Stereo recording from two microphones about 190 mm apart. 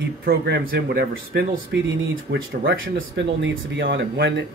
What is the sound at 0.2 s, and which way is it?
Speech, 50° right (ahead or behind).